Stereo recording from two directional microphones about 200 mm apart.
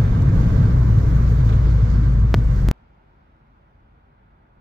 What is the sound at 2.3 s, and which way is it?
Vehicle, centre (ahead or behind).